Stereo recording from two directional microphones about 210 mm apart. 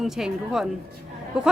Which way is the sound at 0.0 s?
Centre (ahead or behind).